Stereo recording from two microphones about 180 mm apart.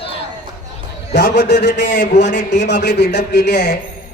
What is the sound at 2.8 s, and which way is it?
Speech, 60° left (ahead or behind).